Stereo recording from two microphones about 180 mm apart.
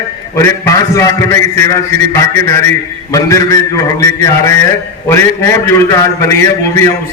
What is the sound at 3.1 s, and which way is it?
A man's voice, 20° left (ahead or behind).